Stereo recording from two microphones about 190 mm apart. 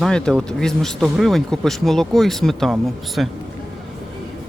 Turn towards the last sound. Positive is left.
turn(degrees=0)  # may be behind; listen again after turning